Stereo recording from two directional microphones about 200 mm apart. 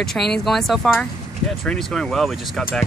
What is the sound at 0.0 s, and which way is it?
Speech, centre (ahead or behind).